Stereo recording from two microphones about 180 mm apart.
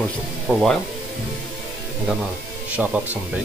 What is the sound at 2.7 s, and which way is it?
Speech, 10° right (ahead or behind).